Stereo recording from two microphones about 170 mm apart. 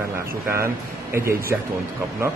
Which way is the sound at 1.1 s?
15° right (ahead or behind).